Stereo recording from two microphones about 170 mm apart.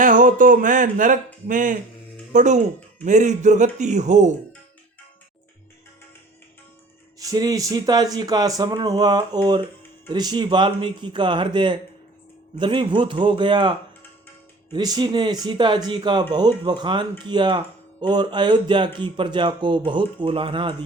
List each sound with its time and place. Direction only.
0.0 s speech: 50° right (ahead or behind)
7.2 s speech: 20° right (ahead or behind)